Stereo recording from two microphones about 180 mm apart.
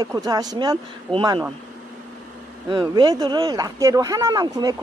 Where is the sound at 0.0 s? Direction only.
20° right (ahead or behind).